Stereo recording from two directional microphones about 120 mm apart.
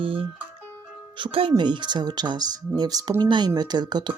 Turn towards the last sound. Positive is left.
turn(degrees=-35)  # may be behind; listen again after turning